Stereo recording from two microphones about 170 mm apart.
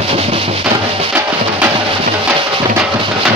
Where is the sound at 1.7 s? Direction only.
30° right (ahead or behind).